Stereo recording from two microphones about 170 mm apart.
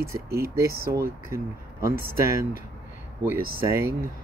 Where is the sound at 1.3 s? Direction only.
15° right (ahead or behind).